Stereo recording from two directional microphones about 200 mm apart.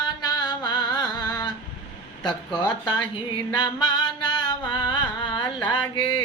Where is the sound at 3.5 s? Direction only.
20° left (ahead or behind).